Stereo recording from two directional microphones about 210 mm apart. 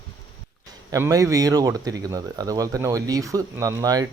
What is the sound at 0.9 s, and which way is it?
Speech, 15° right (ahead or behind).